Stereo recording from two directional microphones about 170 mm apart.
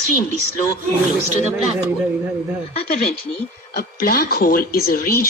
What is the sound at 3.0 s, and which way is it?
Speech, 65° left (ahead or behind).